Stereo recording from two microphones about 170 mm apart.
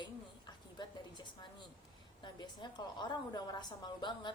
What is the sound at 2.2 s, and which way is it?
A woman's voice, 25° left (ahead or behind).